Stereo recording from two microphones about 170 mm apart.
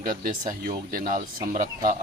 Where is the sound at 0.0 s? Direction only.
55° right (ahead or behind).